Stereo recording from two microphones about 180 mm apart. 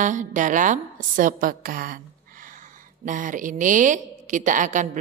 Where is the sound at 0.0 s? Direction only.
45° right (ahead or behind).